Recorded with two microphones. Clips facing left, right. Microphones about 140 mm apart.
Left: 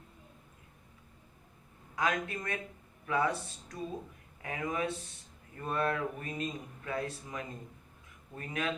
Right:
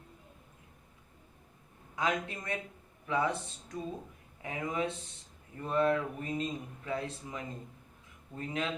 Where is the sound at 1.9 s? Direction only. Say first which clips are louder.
Even; 20° right (ahead or behind).